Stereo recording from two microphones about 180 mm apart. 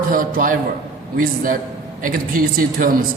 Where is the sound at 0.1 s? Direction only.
50° right (ahead or behind).